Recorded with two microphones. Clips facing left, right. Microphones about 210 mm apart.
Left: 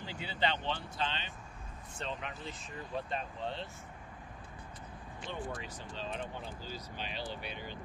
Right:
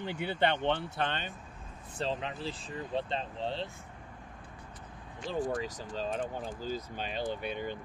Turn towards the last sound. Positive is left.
turn(degrees=-50)  # may be behind; listen again after turning